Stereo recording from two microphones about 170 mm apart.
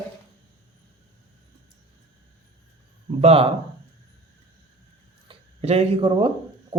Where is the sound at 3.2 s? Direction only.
35° right (ahead or behind).